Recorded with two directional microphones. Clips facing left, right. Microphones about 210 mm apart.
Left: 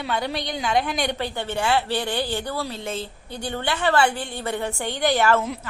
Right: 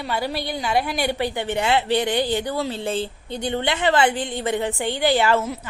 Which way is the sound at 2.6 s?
30° right (ahead or behind).